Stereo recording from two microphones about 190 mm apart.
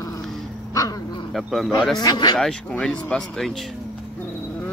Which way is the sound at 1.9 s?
20° left (ahead or behind).